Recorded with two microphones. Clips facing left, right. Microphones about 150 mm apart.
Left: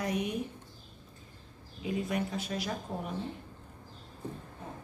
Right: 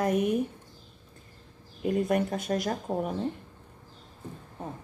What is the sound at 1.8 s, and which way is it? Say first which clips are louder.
Speech: right 7 dB; 50° right (ahead or behind).